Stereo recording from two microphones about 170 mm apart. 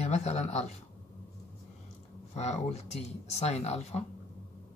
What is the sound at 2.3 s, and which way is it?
Speech, 40° left (ahead or behind).